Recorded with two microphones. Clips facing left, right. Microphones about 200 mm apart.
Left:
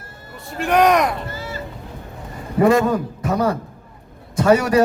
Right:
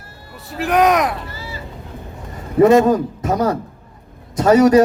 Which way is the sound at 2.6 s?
25° right (ahead or behind).